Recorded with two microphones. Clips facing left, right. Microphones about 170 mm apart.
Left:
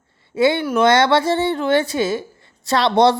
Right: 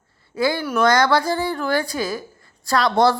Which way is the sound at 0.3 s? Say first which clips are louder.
Left 4 dB; 25° left (ahead or behind).